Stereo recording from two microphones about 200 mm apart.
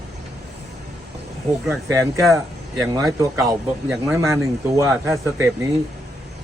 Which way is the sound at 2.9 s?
15° right (ahead or behind).